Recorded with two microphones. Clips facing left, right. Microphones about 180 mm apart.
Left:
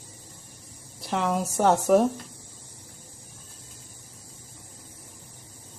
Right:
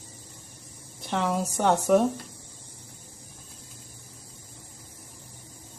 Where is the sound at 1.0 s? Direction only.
Centre (ahead or behind).